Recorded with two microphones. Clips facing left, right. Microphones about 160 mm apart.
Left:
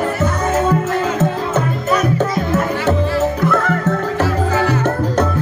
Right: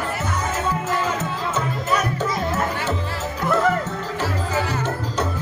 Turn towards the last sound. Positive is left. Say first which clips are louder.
# left 7 dB
turn(degrees=55)  # may be behind; listen again after turning